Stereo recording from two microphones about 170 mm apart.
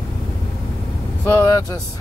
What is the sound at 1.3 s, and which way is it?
Speech, 15° left (ahead or behind).